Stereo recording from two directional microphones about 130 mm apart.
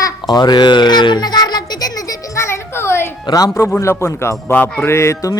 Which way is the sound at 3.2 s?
30° left (ahead or behind).